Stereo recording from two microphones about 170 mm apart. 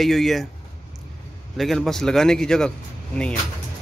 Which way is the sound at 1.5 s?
Centre (ahead or behind).